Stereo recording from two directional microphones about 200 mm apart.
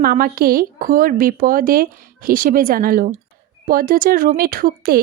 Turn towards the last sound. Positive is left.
turn(degrees=-50)  # may be behind; listen again after turning